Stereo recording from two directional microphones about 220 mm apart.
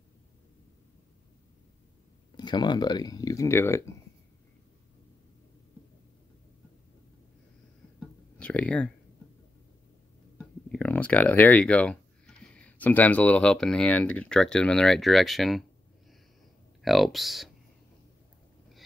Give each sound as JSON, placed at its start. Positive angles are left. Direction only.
{"t": 2.3, "sound": "speech", "side_deg": 20}
{"t": 8.4, "sound": "speech", "side_deg": 5}
{"t": 10.3, "sound": "speech", "side_deg": 5}
{"t": 16.8, "sound": "speech", "side_deg": 0}